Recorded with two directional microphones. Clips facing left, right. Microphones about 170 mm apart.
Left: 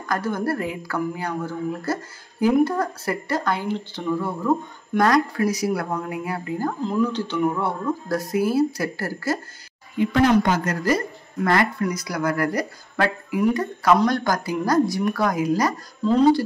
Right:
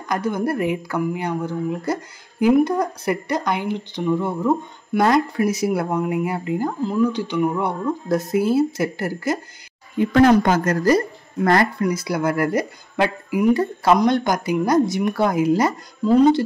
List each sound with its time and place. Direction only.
0.0 s speech: 20° right (ahead or behind)
6.8 s speech: 5° right (ahead or behind)
9.9 s speech: 50° right (ahead or behind)
11.8 s speech: 25° right (ahead or behind)
13.5 s speech: 30° right (ahead or behind)
16.0 s speech: 10° right (ahead or behind)